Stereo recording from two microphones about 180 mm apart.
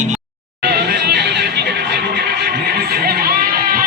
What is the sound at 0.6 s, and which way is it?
Music, 65° right (ahead or behind).